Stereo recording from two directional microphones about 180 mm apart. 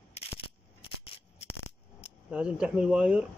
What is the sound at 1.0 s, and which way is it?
Coin, 35° left (ahead or behind).